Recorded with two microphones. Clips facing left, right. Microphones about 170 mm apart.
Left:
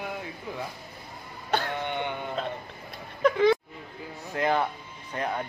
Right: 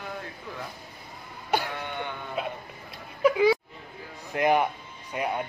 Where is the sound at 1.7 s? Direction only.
20° left (ahead or behind).